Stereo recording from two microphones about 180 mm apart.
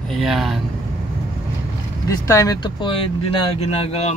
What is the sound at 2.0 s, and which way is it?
A man's voice, 20° left (ahead or behind).